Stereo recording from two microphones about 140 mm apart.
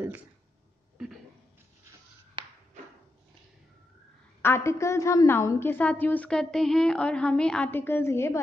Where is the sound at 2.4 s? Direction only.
35° right (ahead or behind).